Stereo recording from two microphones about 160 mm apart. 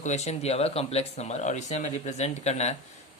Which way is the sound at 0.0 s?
45° left (ahead or behind).